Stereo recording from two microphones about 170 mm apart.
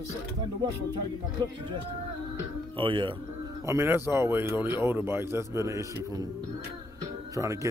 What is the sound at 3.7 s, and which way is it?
Speech, 15° right (ahead or behind).